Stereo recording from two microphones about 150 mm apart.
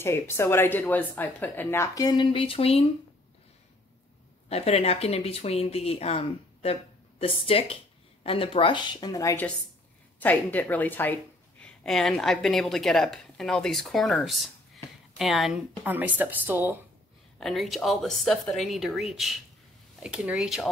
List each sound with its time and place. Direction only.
0.0 s speech: 15° left (ahead or behind); by 2.9 s 40° left (ahead or behind)
4.5 s speech: 40° left (ahead or behind); by 16.7 s 15° right (ahead or behind)
17.4 s speech: centre (ahead or behind)